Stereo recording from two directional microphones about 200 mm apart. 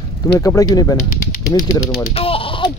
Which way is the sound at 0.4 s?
15° left (ahead or behind).